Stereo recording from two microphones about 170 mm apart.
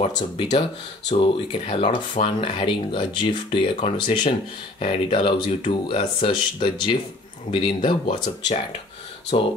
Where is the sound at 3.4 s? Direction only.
40° left (ahead or behind).